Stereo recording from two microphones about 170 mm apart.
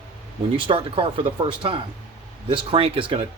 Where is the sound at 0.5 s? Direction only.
30° right (ahead or behind).